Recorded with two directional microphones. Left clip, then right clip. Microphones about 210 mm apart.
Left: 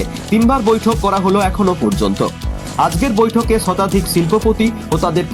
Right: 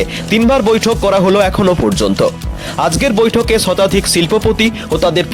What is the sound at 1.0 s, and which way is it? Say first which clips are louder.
Speech: right 5 dB; 55° right (ahead or behind).